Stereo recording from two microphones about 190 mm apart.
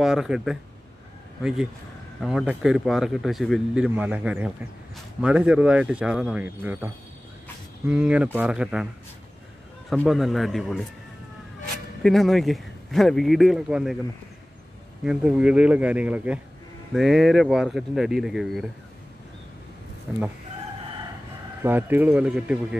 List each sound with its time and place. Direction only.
0.0 s speech: centre (ahead or behind)
2.2 s speech: 5° right (ahead or behind)
9.8 s speech: centre (ahead or behind)
12.0 s speech: centre (ahead or behind)
15.0 s speech: 5° right (ahead or behind)
20.1 s speech: 5° right (ahead or behind)
21.6 s speech: 10° right (ahead or behind)